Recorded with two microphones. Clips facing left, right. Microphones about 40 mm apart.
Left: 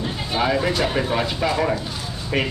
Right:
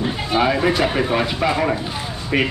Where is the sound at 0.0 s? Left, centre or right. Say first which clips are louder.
Right 4 dB; centre.